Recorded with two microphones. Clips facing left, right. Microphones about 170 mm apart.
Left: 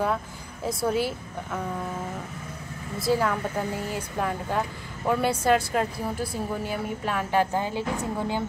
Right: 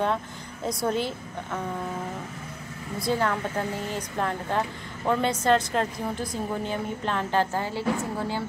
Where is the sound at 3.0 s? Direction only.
5° left (ahead or behind).